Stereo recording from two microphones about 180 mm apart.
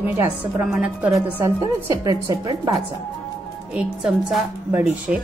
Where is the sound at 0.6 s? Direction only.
5° right (ahead or behind).